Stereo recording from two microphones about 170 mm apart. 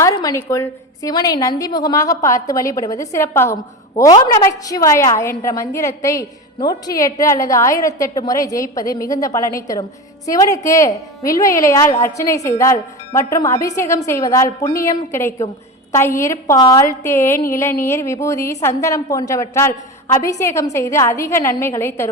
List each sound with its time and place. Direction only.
0.0 s a woman's voice: 20° left (ahead or behind)